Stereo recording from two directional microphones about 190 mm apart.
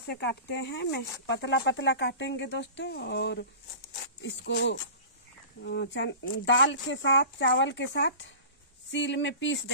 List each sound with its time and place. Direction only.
0.0 s speech: 60° left (ahead or behind)